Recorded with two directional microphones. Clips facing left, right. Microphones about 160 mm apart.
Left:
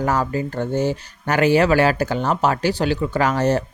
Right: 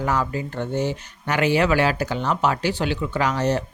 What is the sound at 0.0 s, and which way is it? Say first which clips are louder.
Speech: left 3 dB; 45° left (ahead or behind).